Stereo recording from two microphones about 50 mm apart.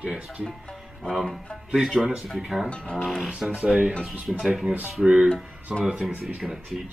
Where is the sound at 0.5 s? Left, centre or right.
Centre.